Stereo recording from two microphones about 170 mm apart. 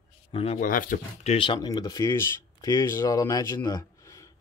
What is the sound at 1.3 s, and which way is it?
Speech, 30° left (ahead or behind).